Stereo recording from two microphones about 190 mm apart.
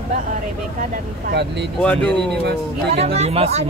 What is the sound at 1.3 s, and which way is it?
Speech, 60° right (ahead or behind).